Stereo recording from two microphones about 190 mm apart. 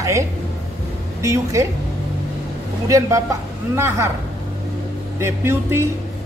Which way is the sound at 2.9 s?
15° right (ahead or behind).